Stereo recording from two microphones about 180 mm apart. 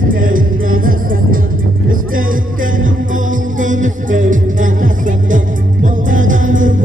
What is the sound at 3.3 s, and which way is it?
Music, 45° right (ahead or behind).